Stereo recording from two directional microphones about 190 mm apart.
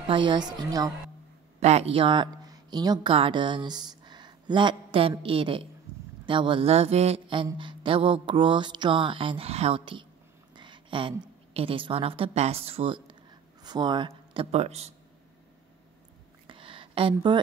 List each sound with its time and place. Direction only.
0.1 s mantra: 25° right (ahead or behind)
1.6 s a woman's voice: 35° right (ahead or behind)
5.2 s mantra: 30° right (ahead or behind)
10.5 s a woman's voice: 25° right (ahead or behind)
16.4 s a sound: 25° right (ahead or behind)